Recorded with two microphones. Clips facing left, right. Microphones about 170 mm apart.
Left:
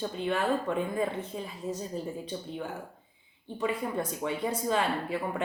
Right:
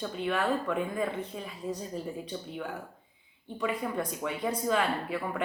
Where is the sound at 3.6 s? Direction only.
30° left (ahead or behind).